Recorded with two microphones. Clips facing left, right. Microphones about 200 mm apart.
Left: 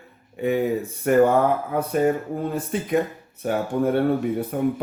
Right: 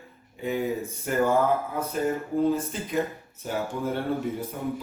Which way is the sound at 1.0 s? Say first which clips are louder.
Left 6 dB; 65° left (ahead or behind).